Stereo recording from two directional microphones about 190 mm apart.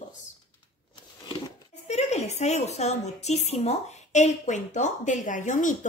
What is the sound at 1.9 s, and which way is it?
A woman's voice, 35° left (ahead or behind).